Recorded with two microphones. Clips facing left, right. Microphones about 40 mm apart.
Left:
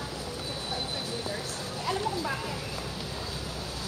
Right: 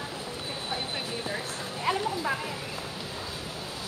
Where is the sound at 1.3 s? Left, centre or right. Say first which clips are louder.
Right 1 dB; right.